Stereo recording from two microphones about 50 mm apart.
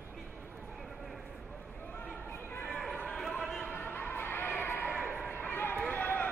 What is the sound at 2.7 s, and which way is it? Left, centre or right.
Run, centre.